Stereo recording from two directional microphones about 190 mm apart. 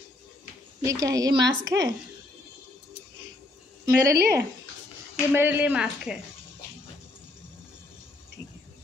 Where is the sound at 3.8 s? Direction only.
15° right (ahead or behind).